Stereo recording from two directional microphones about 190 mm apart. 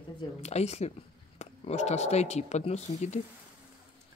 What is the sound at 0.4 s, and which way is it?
Speech, 35° left (ahead or behind).